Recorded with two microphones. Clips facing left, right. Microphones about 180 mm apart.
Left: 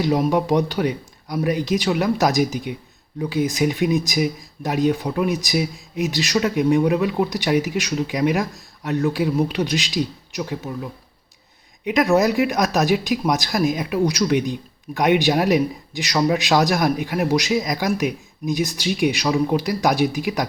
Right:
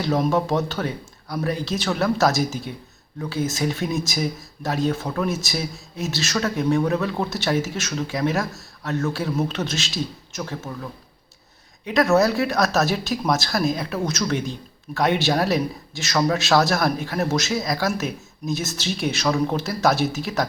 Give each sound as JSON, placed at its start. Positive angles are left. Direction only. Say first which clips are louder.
{"t": 0.0, "sound": "speech", "louder": "left 2 dB", "side_deg": 15}
{"t": 11.9, "sound": "speech", "louder": "left 1 dB", "side_deg": 15}